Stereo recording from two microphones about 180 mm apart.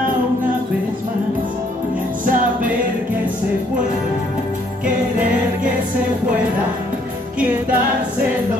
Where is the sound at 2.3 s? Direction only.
50° right (ahead or behind).